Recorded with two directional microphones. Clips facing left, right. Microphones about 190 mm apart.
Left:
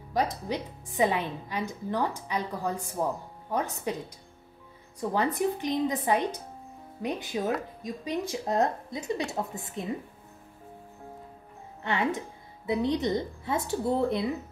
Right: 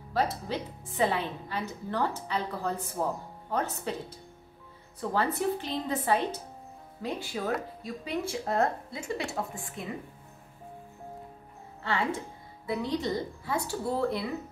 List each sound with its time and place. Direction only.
0.1 s a woman's voice: 15° left (ahead or behind)
5.1 s a woman's voice: 15° left (ahead or behind)
11.8 s speech: 20° left (ahead or behind)